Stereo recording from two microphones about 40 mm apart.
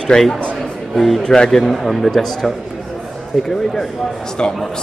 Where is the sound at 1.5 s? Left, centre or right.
Centre.